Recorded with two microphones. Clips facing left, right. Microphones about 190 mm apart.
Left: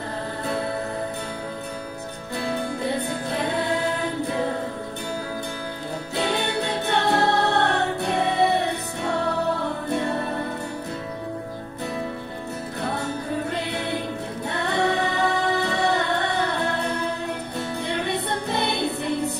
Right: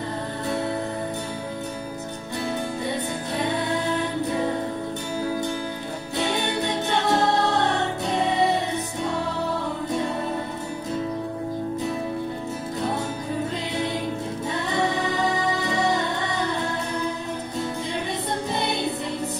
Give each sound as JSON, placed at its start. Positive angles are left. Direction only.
{"t": 6.9, "sound": "music", "side_deg": 60}
{"t": 14.5, "sound": "music", "side_deg": 60}
{"t": 17.8, "sound": "music", "side_deg": 65}